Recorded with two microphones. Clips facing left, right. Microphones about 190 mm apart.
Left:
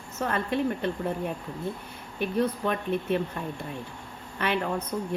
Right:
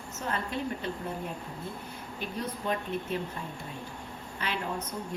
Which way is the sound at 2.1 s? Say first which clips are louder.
Left 10 dB; 60° left (ahead or behind).